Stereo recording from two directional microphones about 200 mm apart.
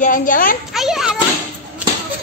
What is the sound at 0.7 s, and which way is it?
Children playing, centre (ahead or behind).